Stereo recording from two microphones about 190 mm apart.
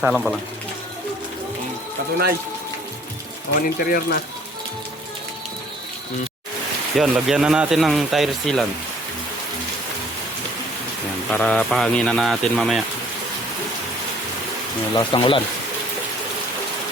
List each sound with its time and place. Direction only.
0.0 s speech: centre (ahead or behind)
3.8 s speech: 50° left (ahead or behind)
6.9 s speech: centre (ahead or behind)
11.3 s speech: 5° left (ahead or behind)
14.9 s speech: 25° left (ahead or behind)